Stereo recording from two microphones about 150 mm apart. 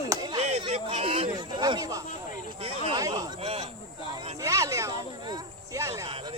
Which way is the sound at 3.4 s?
40° right (ahead or behind).